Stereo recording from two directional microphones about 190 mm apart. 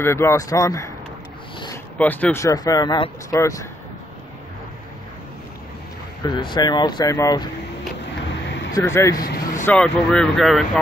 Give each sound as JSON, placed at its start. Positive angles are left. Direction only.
{"t": 0.0, "sound": "speech", "side_deg": 15}
{"t": 2.0, "sound": "speech", "side_deg": 10}
{"t": 6.2, "sound": "speech", "side_deg": 25}
{"t": 8.7, "sound": "speech", "side_deg": 15}
{"t": 9.2, "sound": "vehicle", "side_deg": 45}
{"t": 9.7, "sound": "speech", "side_deg": 5}